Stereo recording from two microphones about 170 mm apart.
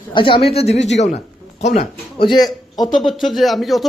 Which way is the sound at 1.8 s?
30° left (ahead or behind).